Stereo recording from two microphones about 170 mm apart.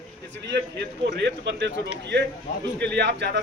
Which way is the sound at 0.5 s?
85° right.